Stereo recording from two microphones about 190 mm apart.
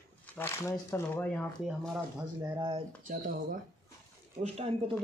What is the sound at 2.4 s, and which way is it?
Speech, 20° right (ahead or behind).